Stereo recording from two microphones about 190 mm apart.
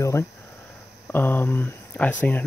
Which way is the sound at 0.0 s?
15° left (ahead or behind).